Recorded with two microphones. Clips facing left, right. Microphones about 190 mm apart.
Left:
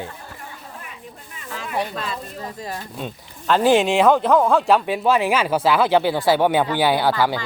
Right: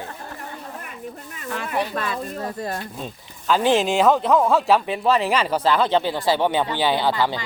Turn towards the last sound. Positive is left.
turn(degrees=10)  # may be behind; listen again after turning